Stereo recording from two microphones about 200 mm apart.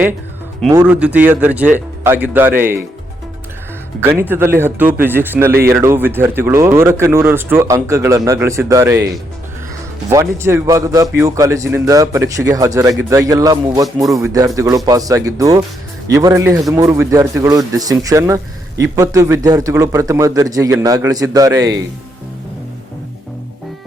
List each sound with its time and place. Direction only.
0.7 s a man's voice: 5° right (ahead or behind)
4.3 s a man's voice: 10° right (ahead or behind)
10.1 s a man's voice: 15° right (ahead or behind)
13.8 s speech: centre (ahead or behind)
14.2 s a man's voice: 15° right (ahead or behind)